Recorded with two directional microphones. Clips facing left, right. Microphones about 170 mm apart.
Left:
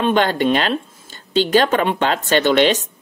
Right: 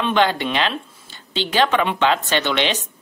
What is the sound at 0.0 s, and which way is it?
A woman's voice, 45° left (ahead or behind).